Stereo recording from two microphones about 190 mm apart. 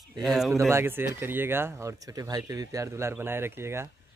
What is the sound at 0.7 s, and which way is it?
Speech, 10° right (ahead or behind).